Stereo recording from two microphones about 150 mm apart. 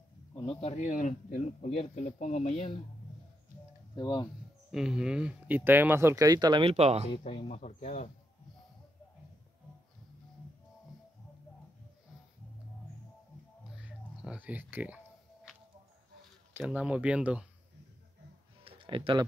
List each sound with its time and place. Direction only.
0.5 s speech: 40° left (ahead or behind)
3.9 s speech: 30° left (ahead or behind)
4.6 s speech: 5° right (ahead or behind); by 7.1 s 45° right (ahead or behind)
7.1 s speech: 35° left (ahead or behind)
7.4 s speech: 50° left (ahead or behind)
13.7 s a sound: 10° right (ahead or behind)
16.5 s speech: 10° right (ahead or behind)
18.6 s a sound: 35° right (ahead or behind)